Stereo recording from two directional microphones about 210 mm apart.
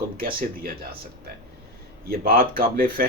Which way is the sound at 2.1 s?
45° right (ahead or behind).